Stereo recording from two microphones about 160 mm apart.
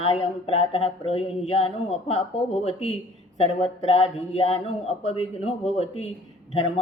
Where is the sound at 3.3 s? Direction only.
40° left (ahead or behind).